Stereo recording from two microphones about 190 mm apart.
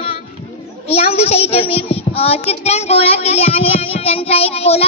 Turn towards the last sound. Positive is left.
turn(degrees=30)  # may be behind; listen again after turning